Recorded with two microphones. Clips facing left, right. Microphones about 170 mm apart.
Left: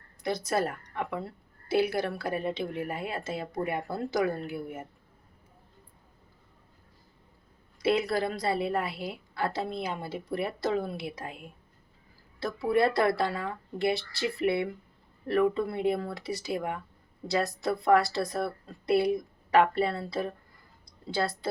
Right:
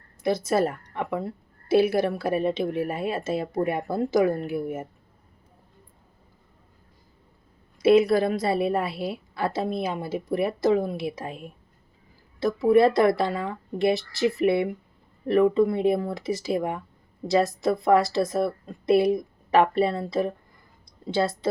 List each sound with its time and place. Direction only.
0.2 s a woman's voice: 25° right (ahead or behind)
7.8 s a woman's voice: 20° right (ahead or behind)